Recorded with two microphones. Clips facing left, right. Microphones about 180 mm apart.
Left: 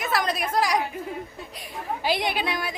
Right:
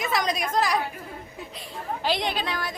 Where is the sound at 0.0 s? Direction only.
5° left (ahead or behind).